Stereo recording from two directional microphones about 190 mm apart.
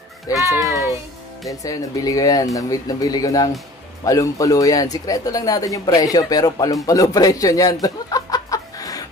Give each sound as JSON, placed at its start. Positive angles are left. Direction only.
{"t": 0.5, "sound": "a child's voice", "side_deg": 20}